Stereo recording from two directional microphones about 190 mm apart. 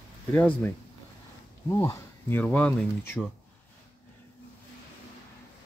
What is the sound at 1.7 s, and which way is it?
Speech, 15° left (ahead or behind).